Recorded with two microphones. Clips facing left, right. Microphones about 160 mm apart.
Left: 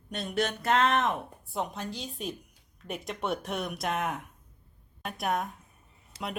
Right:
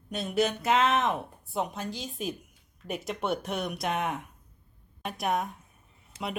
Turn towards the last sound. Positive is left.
turn(degrees=30)  # may be behind; listen again after turning